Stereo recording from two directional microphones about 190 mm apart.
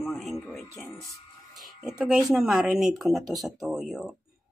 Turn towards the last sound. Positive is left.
turn(degrees=0)  # may be behind; listen again after turning